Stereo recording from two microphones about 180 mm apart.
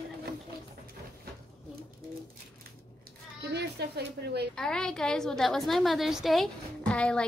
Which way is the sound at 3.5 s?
65° right (ahead or behind).